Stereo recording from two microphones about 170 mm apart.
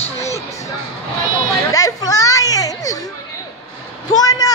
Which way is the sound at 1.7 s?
20° left (ahead or behind).